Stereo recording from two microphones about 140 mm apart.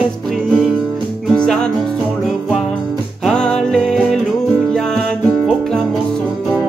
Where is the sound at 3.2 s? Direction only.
5° left (ahead or behind).